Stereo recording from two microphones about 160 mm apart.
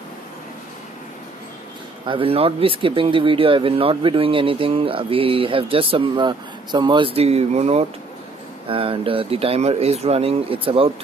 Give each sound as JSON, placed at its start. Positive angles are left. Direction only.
{"t": 2.0, "sound": "speech", "side_deg": -35}